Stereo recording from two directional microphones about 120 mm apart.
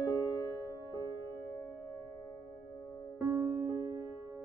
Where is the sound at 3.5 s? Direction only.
30° right (ahead or behind).